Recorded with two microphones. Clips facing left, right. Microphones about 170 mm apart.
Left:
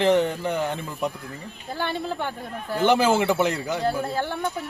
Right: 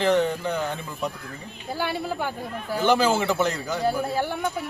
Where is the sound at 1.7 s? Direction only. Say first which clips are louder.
Even; 10° right (ahead or behind).